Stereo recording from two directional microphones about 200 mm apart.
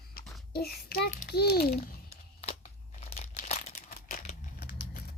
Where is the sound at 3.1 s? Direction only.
40° left (ahead or behind).